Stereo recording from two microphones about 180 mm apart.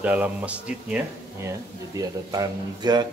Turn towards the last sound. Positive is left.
turn(degrees=-25)  # may be behind; listen again after turning